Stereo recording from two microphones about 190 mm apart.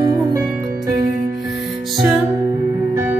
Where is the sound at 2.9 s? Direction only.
15° right (ahead or behind).